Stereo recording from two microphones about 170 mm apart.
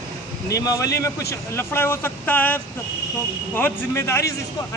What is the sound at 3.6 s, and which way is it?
Speech, 15° left (ahead or behind).